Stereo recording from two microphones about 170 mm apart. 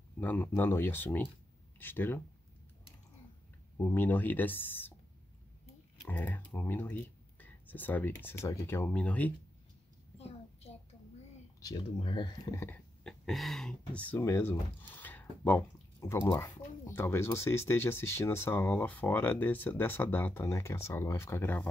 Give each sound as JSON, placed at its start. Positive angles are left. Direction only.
{"t": 0.2, "sound": "speech", "side_deg": 10}
{"t": 3.7, "sound": "speech", "side_deg": 10}
{"t": 6.0, "sound": "speech", "side_deg": 10}
{"t": 10.1, "sound": "a sound", "side_deg": 35}
{"t": 11.6, "sound": "speech", "side_deg": 25}